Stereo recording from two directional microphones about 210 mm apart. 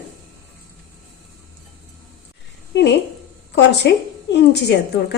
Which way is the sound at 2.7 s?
55° left (ahead or behind).